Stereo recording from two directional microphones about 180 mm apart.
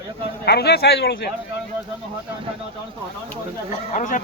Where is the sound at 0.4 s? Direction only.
65° left (ahead or behind).